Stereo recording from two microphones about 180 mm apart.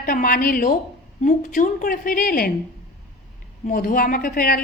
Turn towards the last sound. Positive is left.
turn(degrees=55)  # may be behind; listen again after turning